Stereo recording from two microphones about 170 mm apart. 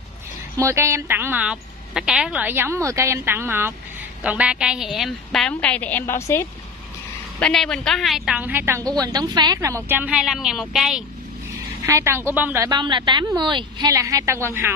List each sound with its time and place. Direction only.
0.6 s a woman's voice: 15° right (ahead or behind); by 6.4 s 15° left (ahead or behind)
7.3 s a woman's voice: 5° left (ahead or behind)
11.8 s a woman's voice: 15° right (ahead or behind)
12.6 s a woman's voice: 25° right (ahead or behind)